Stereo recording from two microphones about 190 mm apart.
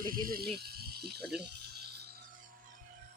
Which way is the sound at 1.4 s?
60° right (ahead or behind).